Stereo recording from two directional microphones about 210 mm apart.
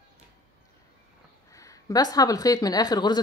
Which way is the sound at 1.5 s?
15° left (ahead or behind).